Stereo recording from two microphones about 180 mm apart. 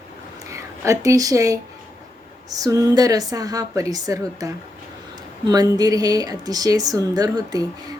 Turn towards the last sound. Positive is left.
turn(degrees=-20)  # may be behind; listen again after turning